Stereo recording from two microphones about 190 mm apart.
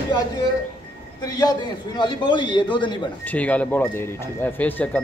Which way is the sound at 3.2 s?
10° left (ahead or behind).